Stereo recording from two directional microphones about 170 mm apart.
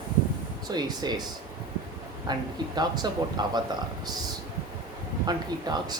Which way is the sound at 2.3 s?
25° right (ahead or behind).